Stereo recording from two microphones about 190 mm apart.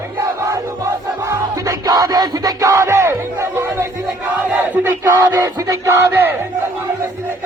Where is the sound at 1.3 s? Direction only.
15° right (ahead or behind).